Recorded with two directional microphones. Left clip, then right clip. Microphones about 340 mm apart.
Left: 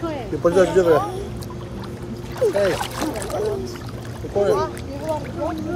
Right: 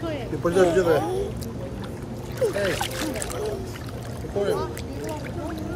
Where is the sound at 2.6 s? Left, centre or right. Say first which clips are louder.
Left 5 dB; centre.